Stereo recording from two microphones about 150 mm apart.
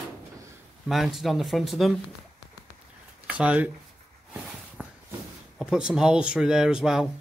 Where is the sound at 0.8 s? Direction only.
Centre (ahead or behind).